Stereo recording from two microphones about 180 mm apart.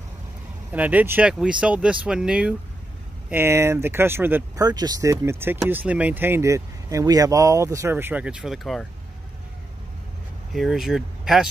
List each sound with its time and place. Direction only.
0.7 s speech: 10° right (ahead or behind)
4.6 s speech: 20° right (ahead or behind); by 8.8 s centre (ahead or behind)
10.5 s speech: centre (ahead or behind)